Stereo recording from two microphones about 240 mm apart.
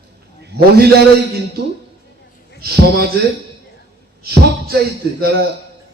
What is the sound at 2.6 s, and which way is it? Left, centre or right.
Speech, right.